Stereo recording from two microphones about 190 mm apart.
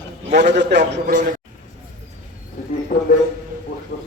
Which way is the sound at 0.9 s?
40° right (ahead or behind).